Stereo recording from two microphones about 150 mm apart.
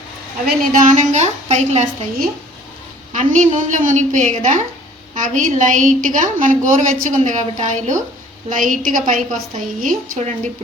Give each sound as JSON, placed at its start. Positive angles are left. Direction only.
{"t": 0.4, "sound": "a woman's voice", "side_deg": -60}
{"t": 3.1, "sound": "a woman's voice", "side_deg": -60}